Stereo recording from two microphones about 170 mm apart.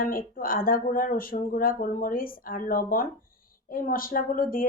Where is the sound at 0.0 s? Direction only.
55° left (ahead or behind).